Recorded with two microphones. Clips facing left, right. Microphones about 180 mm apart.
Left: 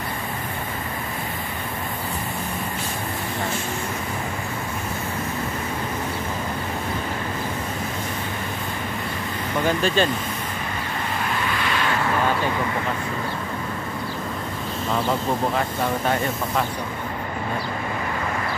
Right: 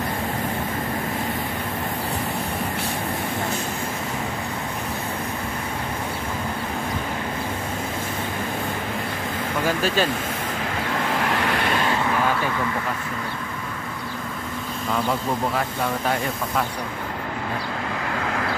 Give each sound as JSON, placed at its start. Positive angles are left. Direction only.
{"t": 9.7, "sound": "speech", "side_deg": -5}
{"t": 10.9, "sound": "vehicle", "side_deg": -85}